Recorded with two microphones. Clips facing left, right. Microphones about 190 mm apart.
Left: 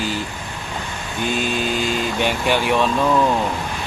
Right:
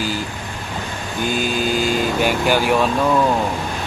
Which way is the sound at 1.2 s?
5° right (ahead or behind).